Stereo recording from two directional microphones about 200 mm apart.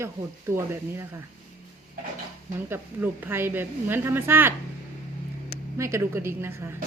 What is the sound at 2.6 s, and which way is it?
A woman's voice, 10° right (ahead or behind).